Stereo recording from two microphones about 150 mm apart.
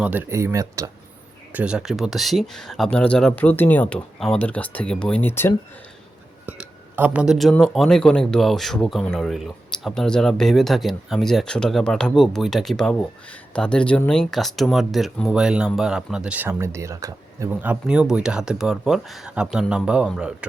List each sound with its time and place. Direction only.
0.0 s speech: 10° right (ahead or behind)
1.5 s speech: 5° right (ahead or behind); by 5.5 s 15° left (ahead or behind)
6.4 s speech: 10° right (ahead or behind)
17.5 s speech: 10° right (ahead or behind)